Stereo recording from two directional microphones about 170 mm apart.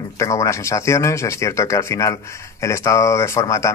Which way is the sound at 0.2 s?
15° left (ahead or behind).